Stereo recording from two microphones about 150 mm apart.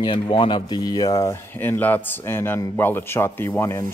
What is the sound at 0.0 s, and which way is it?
Speech, 35° left (ahead or behind).